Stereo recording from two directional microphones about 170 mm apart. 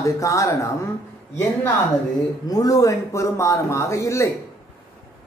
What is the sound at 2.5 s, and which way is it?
Speech, 20° left (ahead or behind).